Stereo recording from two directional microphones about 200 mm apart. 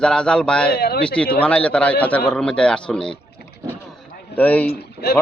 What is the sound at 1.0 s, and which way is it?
Speech, 5° left (ahead or behind).